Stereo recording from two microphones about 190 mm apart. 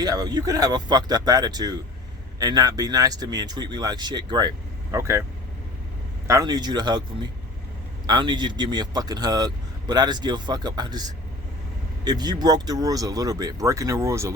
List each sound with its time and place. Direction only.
0.0 s speech: 20° right (ahead or behind)
6.2 s speech: 20° right (ahead or behind)
12.0 s speech: 20° right (ahead or behind)